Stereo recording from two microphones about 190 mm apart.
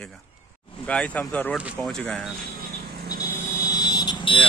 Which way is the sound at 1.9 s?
5° left (ahead or behind).